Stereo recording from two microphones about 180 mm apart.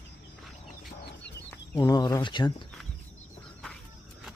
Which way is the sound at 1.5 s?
20° left (ahead or behind).